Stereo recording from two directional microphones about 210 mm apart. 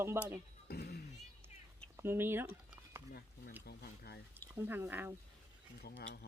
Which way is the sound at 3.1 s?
50° left (ahead or behind).